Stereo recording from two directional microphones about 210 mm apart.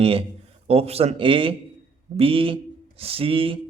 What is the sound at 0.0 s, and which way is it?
A man's voice, 25° right (ahead or behind).